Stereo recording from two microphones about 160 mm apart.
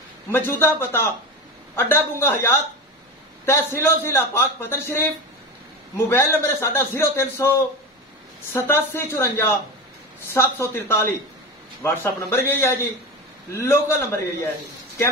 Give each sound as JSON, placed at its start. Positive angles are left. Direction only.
{"t": 0.3, "sound": "a man's voice", "side_deg": 15}